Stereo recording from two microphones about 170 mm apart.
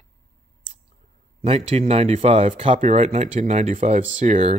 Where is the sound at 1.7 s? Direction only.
40° right (ahead or behind).